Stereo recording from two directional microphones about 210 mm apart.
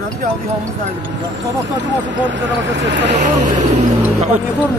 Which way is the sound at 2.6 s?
60° right (ahead or behind).